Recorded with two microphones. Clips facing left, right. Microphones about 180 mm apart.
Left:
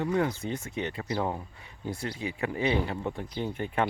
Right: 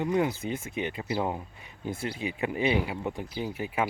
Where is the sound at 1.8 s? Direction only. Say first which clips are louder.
Right 1 dB; 25° right (ahead or behind); by 3.9 s 5° right (ahead or behind).